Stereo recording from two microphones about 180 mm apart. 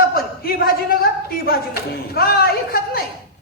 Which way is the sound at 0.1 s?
55° left (ahead or behind).